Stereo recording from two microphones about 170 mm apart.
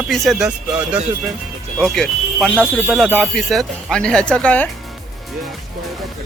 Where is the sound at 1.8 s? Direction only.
5° left (ahead or behind).